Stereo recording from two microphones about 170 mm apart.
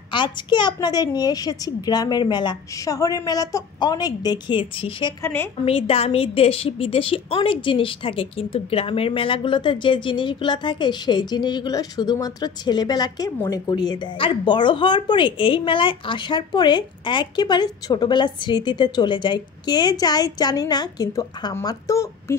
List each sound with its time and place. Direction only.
0.1 s a woman's voice: 25° left (ahead or behind)
5.2 s a woman's voice: 15° left (ahead or behind)
5.7 s a woman's voice: 35° left (ahead or behind); by 22.1 s 20° left (ahead or behind)